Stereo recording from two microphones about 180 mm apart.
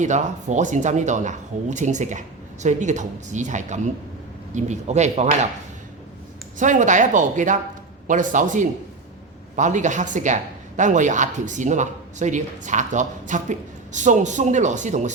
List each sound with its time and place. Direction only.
0.0 s speech: 40° right (ahead or behind)
6.6 s speech: 45° right (ahead or behind)